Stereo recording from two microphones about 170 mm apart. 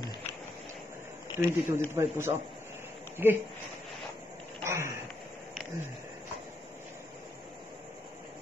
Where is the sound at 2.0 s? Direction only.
15° right (ahead or behind).